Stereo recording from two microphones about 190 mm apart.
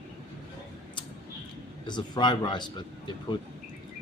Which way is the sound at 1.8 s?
25° left (ahead or behind).